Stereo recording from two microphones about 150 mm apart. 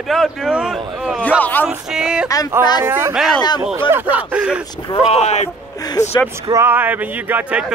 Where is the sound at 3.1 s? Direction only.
Centre (ahead or behind).